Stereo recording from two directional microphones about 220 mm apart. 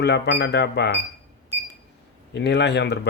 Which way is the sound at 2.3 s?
50° left (ahead or behind).